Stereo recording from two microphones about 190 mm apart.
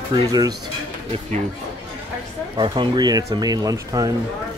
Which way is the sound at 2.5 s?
25° right (ahead or behind).